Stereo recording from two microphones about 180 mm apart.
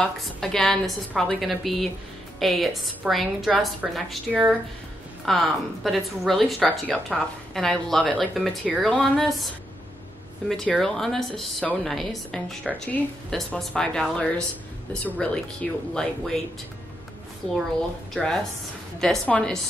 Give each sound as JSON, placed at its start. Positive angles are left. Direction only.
{"t": 0.0, "sound": "a woman's voice", "side_deg": 5}
{"t": 10.5, "sound": "a woman's voice", "side_deg": 0}
{"t": 18.1, "sound": "a woman's voice", "side_deg": 5}